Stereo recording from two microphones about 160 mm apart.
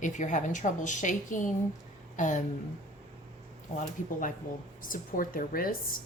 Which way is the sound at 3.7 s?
55° left (ahead or behind).